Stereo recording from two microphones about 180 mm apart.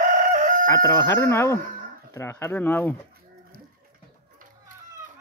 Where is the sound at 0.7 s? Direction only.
15° left (ahead or behind).